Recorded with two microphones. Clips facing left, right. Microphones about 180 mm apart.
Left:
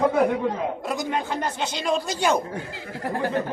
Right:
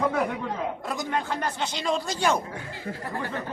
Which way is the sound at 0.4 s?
15° left (ahead or behind).